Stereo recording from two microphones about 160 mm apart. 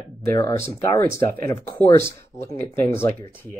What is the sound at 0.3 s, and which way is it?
Speech, 15° left (ahead or behind).